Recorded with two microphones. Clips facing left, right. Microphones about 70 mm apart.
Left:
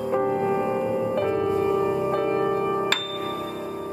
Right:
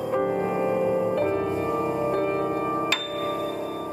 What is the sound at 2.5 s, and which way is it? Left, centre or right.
Music, right.